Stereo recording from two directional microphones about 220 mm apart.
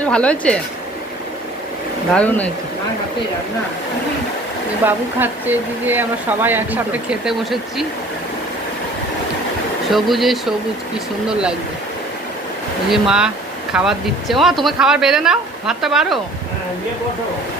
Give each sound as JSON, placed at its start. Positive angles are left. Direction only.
{"t": 0.0, "sound": "speech", "side_deg": 5}
{"t": 2.1, "sound": "speech", "side_deg": 5}
{"t": 4.9, "sound": "speech", "side_deg": -10}
{"t": 9.9, "sound": "speech", "side_deg": 0}
{"t": 12.9, "sound": "speech", "side_deg": -5}